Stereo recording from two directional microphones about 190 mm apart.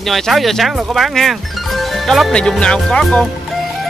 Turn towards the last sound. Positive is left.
turn(degrees=5)  # may be behind; listen again after turning